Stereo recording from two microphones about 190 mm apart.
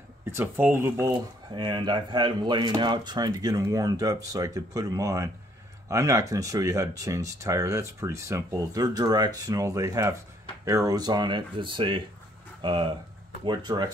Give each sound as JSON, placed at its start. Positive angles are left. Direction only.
{"t": 0.2, "sound": "speech", "side_deg": -15}
{"t": 1.5, "sound": "speech", "side_deg": -25}